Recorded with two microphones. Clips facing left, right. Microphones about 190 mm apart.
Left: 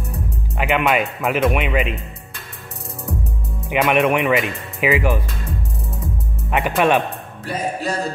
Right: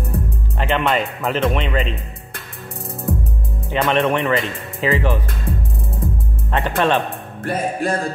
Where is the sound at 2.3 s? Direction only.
55° right (ahead or behind).